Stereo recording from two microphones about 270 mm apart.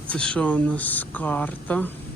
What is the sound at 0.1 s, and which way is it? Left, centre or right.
Speech, centre.